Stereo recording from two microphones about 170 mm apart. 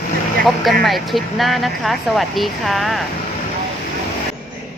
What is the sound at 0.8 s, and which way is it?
Speech, centre (ahead or behind).